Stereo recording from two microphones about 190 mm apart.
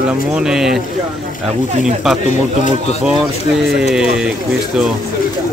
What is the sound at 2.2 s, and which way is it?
Speech, 35° left (ahead or behind).